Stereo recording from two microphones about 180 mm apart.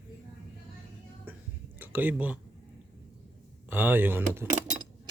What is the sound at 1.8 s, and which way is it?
Speech, 10° right (ahead or behind).